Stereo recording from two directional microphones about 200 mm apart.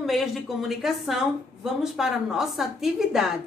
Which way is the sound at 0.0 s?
Centre (ahead or behind).